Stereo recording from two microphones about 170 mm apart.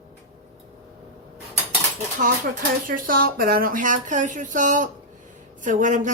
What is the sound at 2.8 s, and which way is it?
A woman's voice, 55° right (ahead or behind).